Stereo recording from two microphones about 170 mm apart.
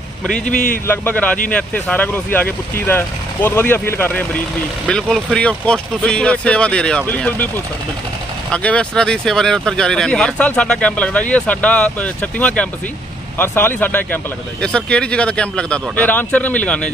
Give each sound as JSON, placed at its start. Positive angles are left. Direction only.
{"t": 0.5, "sound": "a man's voice", "side_deg": 50}
{"t": 0.8, "sound": "speech", "side_deg": 10}